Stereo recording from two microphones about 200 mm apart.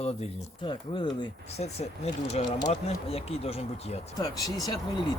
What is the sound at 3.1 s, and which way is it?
Speech, 30° left (ahead or behind).